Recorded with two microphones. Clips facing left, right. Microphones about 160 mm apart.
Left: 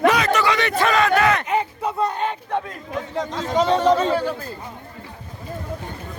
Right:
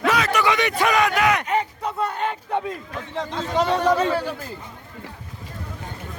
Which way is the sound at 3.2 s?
5° right (ahead or behind).